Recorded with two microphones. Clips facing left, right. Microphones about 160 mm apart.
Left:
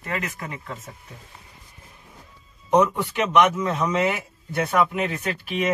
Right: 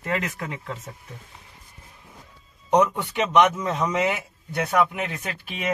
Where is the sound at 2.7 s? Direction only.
20° right (ahead or behind).